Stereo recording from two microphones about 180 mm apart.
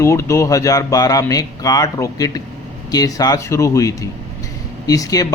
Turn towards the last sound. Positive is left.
turn(degrees=20)  # may be behind; listen again after turning